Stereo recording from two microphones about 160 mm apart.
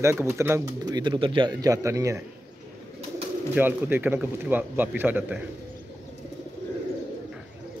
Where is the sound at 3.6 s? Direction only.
10° right (ahead or behind).